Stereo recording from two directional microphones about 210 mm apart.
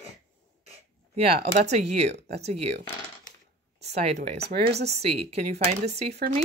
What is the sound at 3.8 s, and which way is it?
Speech, 30° right (ahead or behind).